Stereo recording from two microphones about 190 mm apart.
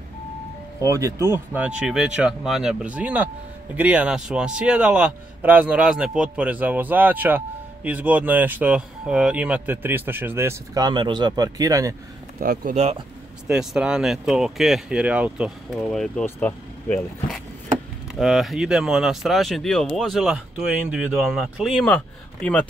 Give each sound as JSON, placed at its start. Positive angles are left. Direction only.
{"t": 0.7, "sound": "a man's voice", "side_deg": -15}
{"t": 12.4, "sound": "speech", "side_deg": -50}
{"t": 12.7, "sound": "speech", "side_deg": -35}
{"t": 13.5, "sound": "speech", "side_deg": -5}